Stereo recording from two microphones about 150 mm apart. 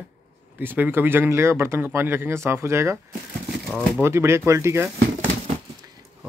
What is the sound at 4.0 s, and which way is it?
Speech, 15° right (ahead or behind).